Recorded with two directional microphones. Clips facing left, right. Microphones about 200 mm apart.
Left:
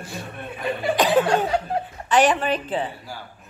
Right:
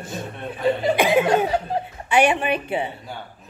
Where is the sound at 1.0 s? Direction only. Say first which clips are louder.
Even; 15° right (ahead or behind).